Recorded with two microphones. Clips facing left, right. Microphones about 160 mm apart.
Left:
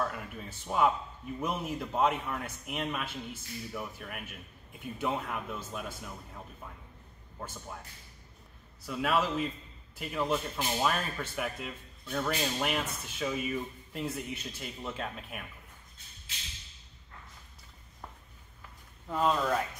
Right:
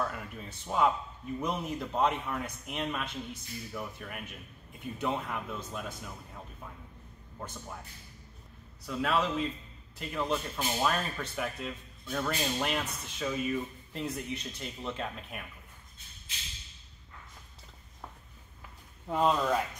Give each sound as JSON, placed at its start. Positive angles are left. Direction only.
{"t": 0.0, "sound": "speech", "side_deg": 0}
{"t": 8.8, "sound": "speech", "side_deg": 5}
{"t": 19.0, "sound": "speech", "side_deg": -10}